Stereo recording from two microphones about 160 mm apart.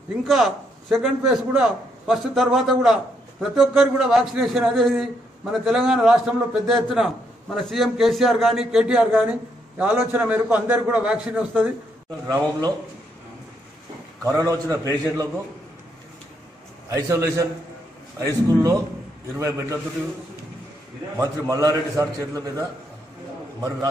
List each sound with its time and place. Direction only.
0.3 s a man's voice: centre (ahead or behind)
12.3 s a man's voice: 25° right (ahead or behind)
14.2 s a man's voice: 20° right (ahead or behind)
16.9 s a man's voice: 20° right (ahead or behind)
21.2 s a man's voice: 20° right (ahead or behind)